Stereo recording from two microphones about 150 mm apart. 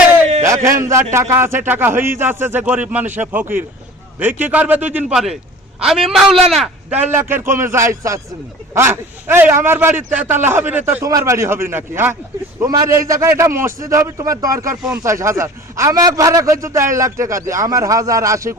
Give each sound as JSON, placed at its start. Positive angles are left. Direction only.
{"t": 0.4, "sound": "a sound", "side_deg": -20}
{"t": 0.8, "sound": "a man's voice", "side_deg": -20}
{"t": 7.1, "sound": "a man's voice", "side_deg": -15}